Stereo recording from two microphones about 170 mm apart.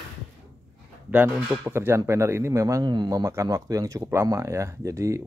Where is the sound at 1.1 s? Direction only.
10° right (ahead or behind).